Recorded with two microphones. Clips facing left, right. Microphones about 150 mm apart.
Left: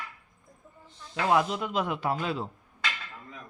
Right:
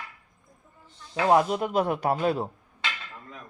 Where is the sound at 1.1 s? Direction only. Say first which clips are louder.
Right 4 dB; 35° right (ahead or behind).